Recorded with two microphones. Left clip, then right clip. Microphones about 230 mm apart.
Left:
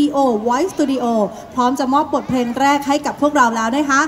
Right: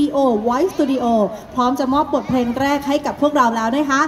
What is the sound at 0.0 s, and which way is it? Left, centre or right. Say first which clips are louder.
A woman's voice: left 1 dB; left.